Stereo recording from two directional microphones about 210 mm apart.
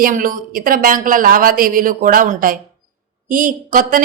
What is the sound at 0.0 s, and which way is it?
A woman's voice, 40° right (ahead or behind).